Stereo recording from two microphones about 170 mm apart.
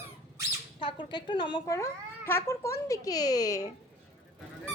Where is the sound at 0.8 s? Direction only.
30° left (ahead or behind).